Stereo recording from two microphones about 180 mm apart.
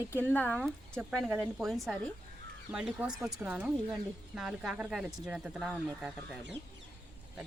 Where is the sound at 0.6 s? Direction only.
Centre (ahead or behind).